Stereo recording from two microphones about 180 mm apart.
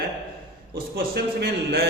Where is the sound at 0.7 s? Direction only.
60° right (ahead or behind).